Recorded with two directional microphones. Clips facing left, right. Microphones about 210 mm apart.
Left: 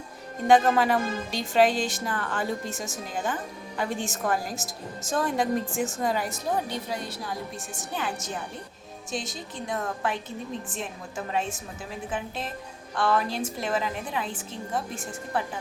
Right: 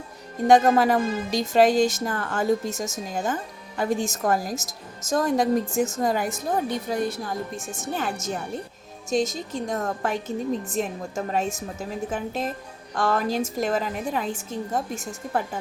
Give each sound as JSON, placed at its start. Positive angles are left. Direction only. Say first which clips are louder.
{"t": 0.4, "sound": "a woman's voice", "louder": "right 3 dB", "side_deg": -40}